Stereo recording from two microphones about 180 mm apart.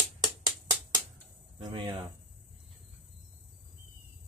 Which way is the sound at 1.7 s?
30° right (ahead or behind).